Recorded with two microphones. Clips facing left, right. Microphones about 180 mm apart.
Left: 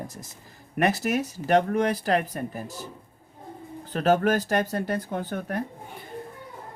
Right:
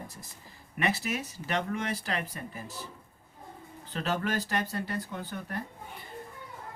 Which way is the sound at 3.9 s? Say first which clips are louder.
Left 10 dB; 45° left (ahead or behind).